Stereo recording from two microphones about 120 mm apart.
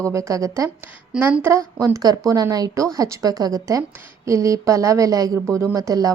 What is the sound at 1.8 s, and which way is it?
A woman's voice, 30° right (ahead or behind).